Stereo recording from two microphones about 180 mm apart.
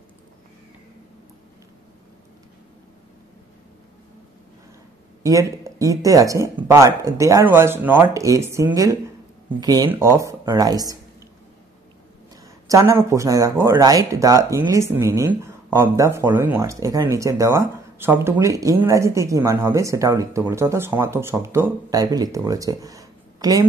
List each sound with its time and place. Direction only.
5.2 s speech: 20° right (ahead or behind)
12.6 s speech: 15° right (ahead or behind)